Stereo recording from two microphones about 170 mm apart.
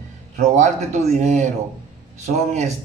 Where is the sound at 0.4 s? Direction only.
40° right (ahead or behind).